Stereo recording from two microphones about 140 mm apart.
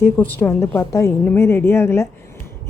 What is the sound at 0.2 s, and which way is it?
A woman's voice, 15° left (ahead or behind).